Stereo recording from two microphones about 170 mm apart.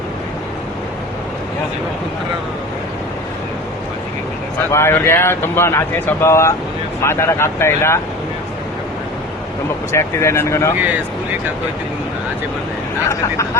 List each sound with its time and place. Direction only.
4.7 s speech: 15° left (ahead or behind)
9.9 s speech: 15° left (ahead or behind)